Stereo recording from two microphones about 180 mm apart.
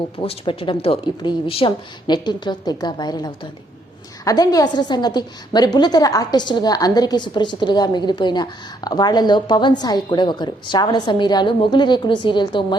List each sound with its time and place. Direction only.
0.2 s a woman's voice: 30° left (ahead or behind)